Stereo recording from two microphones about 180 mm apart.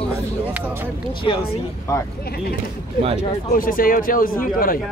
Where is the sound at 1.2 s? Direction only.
30° left (ahead or behind).